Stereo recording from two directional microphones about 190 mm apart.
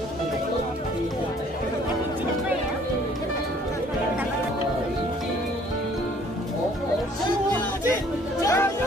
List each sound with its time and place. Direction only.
8.4 s music: 15° left (ahead or behind)